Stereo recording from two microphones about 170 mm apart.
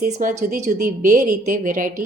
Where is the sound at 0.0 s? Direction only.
50° right (ahead or behind).